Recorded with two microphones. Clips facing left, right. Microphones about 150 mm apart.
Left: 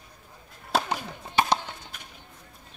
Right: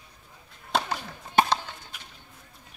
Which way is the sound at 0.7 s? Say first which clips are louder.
Left 1 dB; 5° left (ahead or behind).